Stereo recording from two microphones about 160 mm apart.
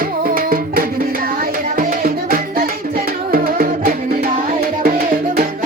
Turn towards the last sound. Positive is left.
turn(degrees=-65)  # may be behind; listen again after turning